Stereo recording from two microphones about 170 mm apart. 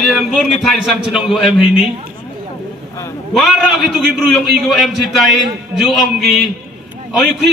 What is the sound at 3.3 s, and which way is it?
A man's voice, centre (ahead or behind).